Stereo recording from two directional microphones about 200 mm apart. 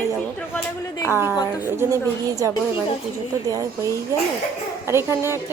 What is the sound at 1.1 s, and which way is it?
Speech, 10° right (ahead or behind).